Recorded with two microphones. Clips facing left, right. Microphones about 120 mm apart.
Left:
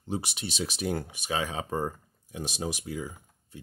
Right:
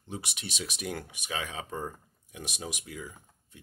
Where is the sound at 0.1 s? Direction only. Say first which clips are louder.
Left 6 dB; 30° left (ahead or behind).